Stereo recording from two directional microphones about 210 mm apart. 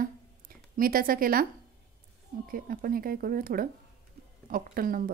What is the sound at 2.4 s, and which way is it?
A woman's voice, 45° right (ahead or behind).